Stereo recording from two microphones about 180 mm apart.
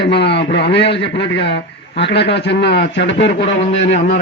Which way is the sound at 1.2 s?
70° left (ahead or behind).